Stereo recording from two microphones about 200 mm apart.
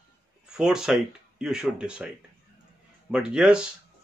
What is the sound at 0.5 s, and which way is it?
Speech, 5° right (ahead or behind).